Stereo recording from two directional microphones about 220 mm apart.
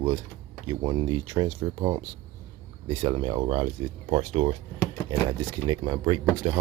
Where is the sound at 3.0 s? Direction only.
20° right (ahead or behind).